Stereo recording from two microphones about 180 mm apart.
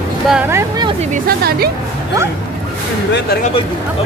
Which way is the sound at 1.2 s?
60° right (ahead or behind).